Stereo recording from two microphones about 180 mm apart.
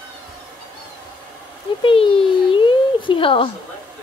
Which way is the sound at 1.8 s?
30° left (ahead or behind).